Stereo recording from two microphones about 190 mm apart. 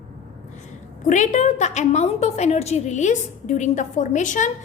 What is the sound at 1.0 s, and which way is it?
A woman's voice, 40° left (ahead or behind).